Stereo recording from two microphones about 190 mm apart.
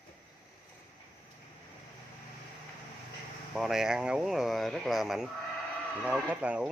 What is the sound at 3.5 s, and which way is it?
Speech, centre (ahead or behind).